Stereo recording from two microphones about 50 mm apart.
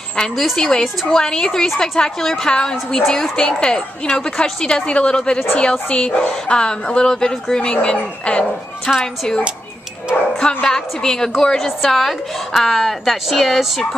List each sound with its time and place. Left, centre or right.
0.4 s speech: centre
10.4 s speech: centre
11.5 s a woman's voice: centre